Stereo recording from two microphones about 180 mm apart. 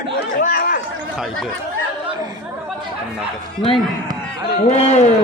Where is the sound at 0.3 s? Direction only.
55° left (ahead or behind).